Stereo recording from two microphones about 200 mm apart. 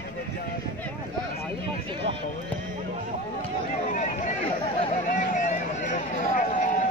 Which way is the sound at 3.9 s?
40° left (ahead or behind).